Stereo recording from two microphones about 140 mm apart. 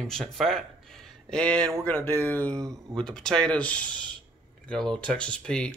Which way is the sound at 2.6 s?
25° right (ahead or behind).